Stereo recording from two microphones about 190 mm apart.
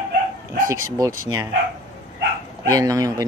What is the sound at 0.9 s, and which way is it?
Speech, 20° right (ahead or behind).